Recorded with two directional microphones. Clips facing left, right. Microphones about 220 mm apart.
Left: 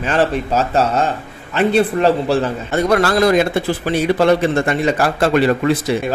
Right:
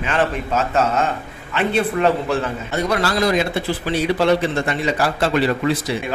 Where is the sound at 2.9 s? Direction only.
50° left (ahead or behind).